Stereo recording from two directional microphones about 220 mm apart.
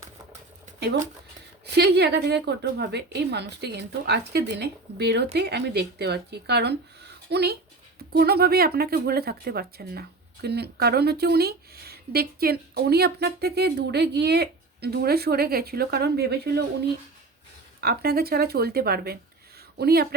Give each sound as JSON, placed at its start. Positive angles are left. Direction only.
{"t": 1.6, "sound": "speech", "side_deg": -50}
{"t": 17.7, "sound": "speech", "side_deg": -45}